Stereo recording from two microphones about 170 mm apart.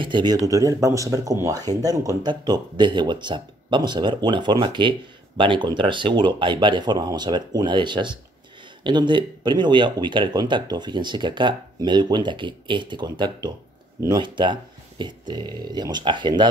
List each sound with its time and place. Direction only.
0.0 s speech: 25° right (ahead or behind)